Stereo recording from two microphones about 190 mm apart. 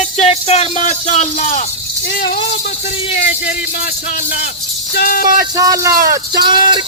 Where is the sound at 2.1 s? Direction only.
50° left (ahead or behind).